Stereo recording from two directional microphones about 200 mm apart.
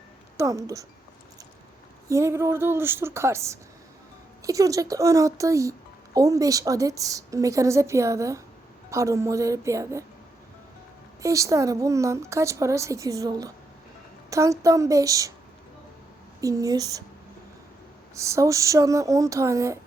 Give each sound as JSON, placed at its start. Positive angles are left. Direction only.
{"t": 0.3, "sound": "speech", "side_deg": -15}
{"t": 2.0, "sound": "speech", "side_deg": -15}
{"t": 11.2, "sound": "speech", "side_deg": -15}
{"t": 16.4, "sound": "speech", "side_deg": -15}
{"t": 18.1, "sound": "speech", "side_deg": -15}